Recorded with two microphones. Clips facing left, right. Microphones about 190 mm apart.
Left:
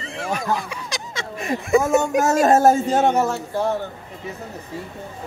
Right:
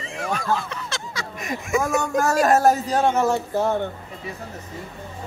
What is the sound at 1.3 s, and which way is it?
Speech, 30° left (ahead or behind).